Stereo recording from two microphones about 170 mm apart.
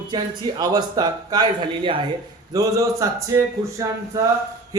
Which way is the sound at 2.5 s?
20° right (ahead or behind).